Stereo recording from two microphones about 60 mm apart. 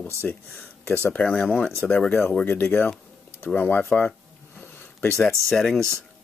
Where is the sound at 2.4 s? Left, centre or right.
Left.